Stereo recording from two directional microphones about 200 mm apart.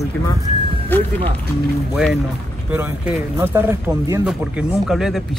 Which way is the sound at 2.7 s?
10° right (ahead or behind).